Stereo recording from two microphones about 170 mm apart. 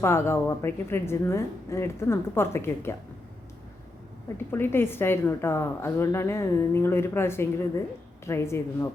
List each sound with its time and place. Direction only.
0.0 s a woman's voice: 15° left (ahead or behind)
4.5 s a woman's voice: 15° left (ahead or behind)